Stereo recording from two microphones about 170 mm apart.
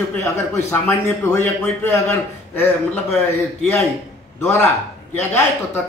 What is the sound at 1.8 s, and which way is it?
A man's voice, 15° left (ahead or behind).